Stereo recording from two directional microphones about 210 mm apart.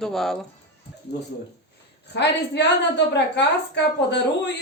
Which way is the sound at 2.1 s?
55° left (ahead or behind).